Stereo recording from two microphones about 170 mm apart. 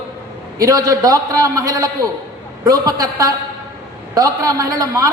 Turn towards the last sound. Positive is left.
turn(degrees=-20)  # may be behind; listen again after turning